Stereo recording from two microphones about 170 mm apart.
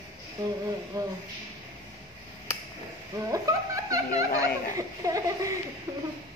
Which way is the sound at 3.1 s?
20° right (ahead or behind).